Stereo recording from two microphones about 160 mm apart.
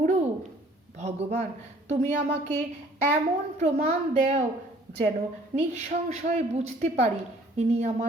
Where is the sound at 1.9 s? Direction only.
50° right (ahead or behind).